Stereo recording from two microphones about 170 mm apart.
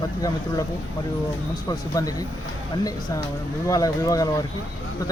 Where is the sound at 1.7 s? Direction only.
20° left (ahead or behind).